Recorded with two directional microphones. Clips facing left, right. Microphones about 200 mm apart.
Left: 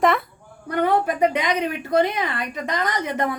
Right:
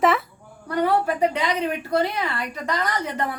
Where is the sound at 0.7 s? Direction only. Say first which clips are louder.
Left 1 dB; 20° left (ahead or behind).